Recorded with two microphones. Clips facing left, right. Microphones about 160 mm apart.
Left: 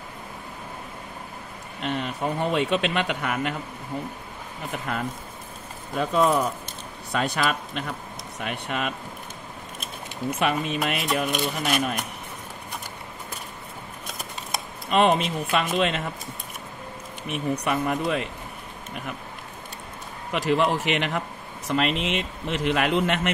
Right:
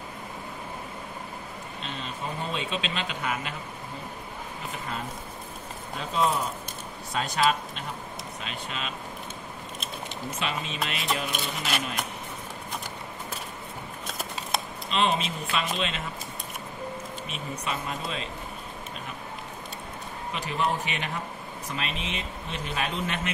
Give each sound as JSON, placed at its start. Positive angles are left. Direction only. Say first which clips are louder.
{"t": 1.8, "sound": "speech", "louder": "left 9 dB", "side_deg": 65}
{"t": 4.9, "sound": "speech", "louder": "left 6 dB", "side_deg": 65}
{"t": 7.1, "sound": "speech", "louder": "left 1 dB", "side_deg": 60}
{"t": 10.3, "sound": "speech", "louder": "left 9 dB", "side_deg": 55}
{"t": 14.9, "sound": "speech", "louder": "left 6 dB", "side_deg": 55}
{"t": 17.3, "sound": "speech", "louder": "left 9 dB", "side_deg": 60}
{"t": 20.2, "sound": "a man's voice", "louder": "left 7 dB", "side_deg": 80}
{"t": 21.6, "sound": "a man's voice", "louder": "left 10 dB", "side_deg": 70}